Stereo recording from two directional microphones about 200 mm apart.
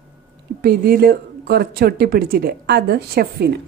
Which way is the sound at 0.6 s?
50° right (ahead or behind).